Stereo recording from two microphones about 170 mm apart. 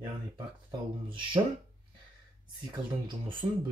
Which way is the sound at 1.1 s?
30° right (ahead or behind).